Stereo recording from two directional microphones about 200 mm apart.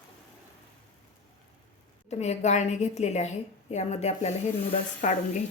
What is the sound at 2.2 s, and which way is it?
A woman's voice, 35° left (ahead or behind).